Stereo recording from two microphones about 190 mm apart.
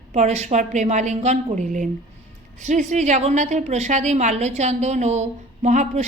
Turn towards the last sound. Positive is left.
turn(degrees=-40)  # may be behind; listen again after turning